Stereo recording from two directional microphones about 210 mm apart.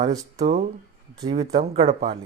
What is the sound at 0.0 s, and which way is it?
Speech, 15° right (ahead or behind).